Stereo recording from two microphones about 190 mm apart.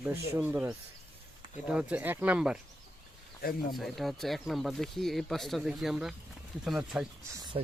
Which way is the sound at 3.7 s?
Centre (ahead or behind).